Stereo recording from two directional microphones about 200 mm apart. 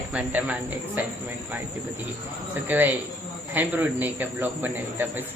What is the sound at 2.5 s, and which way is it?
A man's voice, 10° right (ahead or behind).